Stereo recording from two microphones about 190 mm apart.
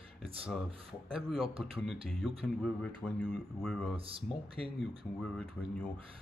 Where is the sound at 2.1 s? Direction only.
5° left (ahead or behind).